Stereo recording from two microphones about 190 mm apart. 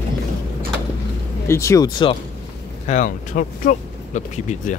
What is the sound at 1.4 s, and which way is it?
Speech, 15° left (ahead or behind).